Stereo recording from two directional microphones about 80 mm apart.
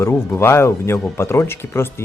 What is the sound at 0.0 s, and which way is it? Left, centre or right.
Speech, left.